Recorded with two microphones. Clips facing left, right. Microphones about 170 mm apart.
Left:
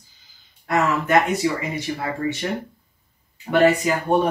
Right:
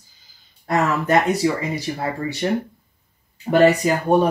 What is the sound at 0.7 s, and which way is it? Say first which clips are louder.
Speech: right 1 dB; 35° right (ahead or behind).